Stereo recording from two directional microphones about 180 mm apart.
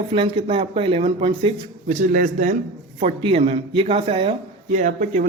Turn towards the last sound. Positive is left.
turn(degrees=-40)  # may be behind; listen again after turning